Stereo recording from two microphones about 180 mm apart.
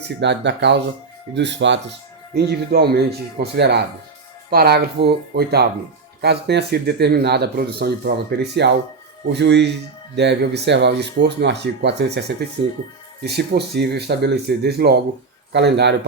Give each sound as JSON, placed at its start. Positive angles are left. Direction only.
{"t": 0.2, "sound": "speech", "side_deg": -75}
{"t": 2.3, "sound": "speech", "side_deg": -65}